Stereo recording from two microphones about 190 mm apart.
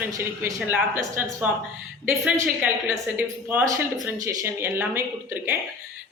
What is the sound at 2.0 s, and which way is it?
A woman's voice, 5° right (ahead or behind).